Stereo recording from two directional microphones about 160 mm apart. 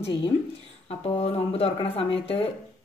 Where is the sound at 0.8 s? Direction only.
40° left (ahead or behind).